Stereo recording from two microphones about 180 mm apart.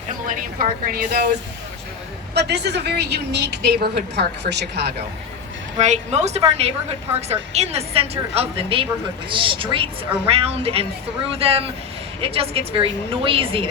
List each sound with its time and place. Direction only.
0.3 s a woman's voice: 50° right (ahead or behind)
2.3 s a woman's voice: 70° right (ahead or behind)
5.8 s a woman's voice: 40° right (ahead or behind)